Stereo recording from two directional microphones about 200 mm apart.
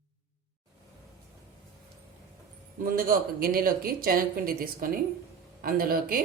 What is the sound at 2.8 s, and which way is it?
A woman's voice, 45° right (ahead or behind).